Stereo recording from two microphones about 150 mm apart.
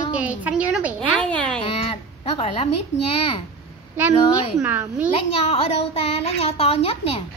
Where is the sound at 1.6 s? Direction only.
40° left (ahead or behind).